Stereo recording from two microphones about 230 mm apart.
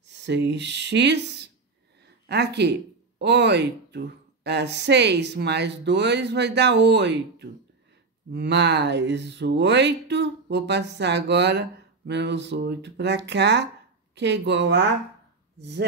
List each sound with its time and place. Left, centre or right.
0.0 s speech: right